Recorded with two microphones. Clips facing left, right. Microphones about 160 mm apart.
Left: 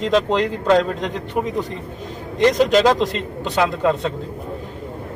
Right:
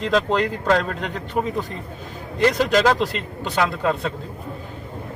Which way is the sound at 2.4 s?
20° left (ahead or behind).